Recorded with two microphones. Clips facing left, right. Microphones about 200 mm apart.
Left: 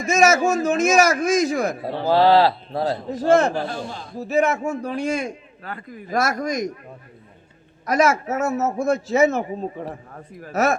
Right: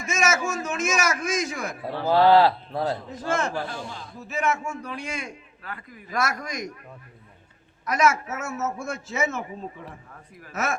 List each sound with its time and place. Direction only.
0.0 s a man's voice: 35° left (ahead or behind)
7.9 s a man's voice: 35° left (ahead or behind)